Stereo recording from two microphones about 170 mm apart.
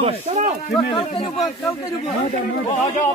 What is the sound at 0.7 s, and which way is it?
Speech, 30° left (ahead or behind).